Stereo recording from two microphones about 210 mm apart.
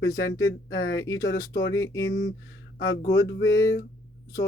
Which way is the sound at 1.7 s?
15° left (ahead or behind).